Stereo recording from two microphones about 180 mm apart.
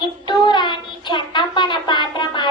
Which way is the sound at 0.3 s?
25° left (ahead or behind).